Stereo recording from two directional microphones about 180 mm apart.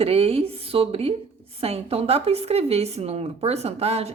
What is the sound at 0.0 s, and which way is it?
Speech, 35° right (ahead or behind).